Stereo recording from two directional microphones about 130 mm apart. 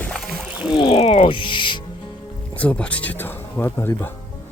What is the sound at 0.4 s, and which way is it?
Rowboat, 5° right (ahead or behind).